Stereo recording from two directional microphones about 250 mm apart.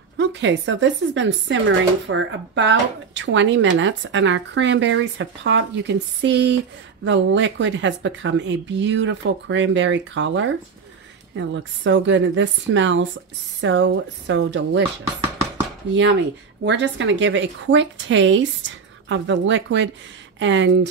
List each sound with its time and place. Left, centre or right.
0.2 s speech: right
15.9 s speech: right